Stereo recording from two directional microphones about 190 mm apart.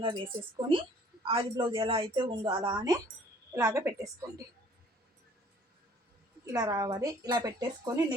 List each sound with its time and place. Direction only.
0.0 s a woman's voice: 25° right (ahead or behind)
6.4 s a woman's voice: 15° right (ahead or behind)